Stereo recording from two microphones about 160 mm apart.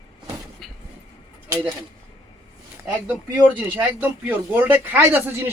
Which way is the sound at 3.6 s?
10° right (ahead or behind).